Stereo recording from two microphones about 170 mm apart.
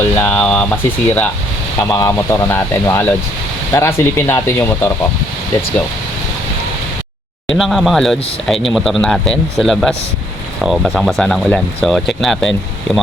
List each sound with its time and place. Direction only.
0.2 s boiling: 5° left (ahead or behind)
1.8 s speech: 20° left (ahead or behind)
7.6 s speech: centre (ahead or behind)